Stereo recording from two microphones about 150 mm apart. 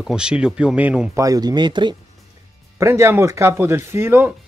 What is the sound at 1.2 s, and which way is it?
Speech, 25° right (ahead or behind).